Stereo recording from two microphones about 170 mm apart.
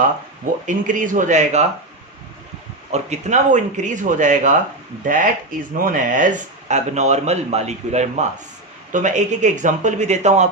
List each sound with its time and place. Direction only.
0.7 s speech: 50° right (ahead or behind)
2.9 s speech: 45° right (ahead or behind)